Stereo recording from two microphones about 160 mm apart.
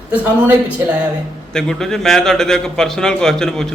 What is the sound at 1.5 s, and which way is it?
A man's voice, 5° left (ahead or behind).